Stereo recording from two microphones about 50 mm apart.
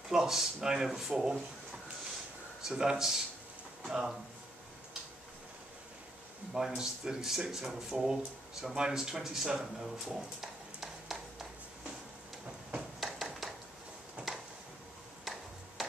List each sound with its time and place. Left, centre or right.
0.1 s speech: centre
2.6 s speech: centre
6.5 s speech: centre
13.0 s a sound: centre
14.2 s tick-tock: right
15.8 s music: centre